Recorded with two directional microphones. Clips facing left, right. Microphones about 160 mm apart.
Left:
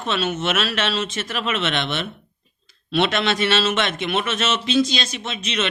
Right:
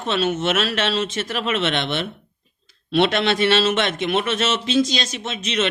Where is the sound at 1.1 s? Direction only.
45° right (ahead or behind).